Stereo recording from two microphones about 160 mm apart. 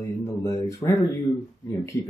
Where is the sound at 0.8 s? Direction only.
25° left (ahead or behind).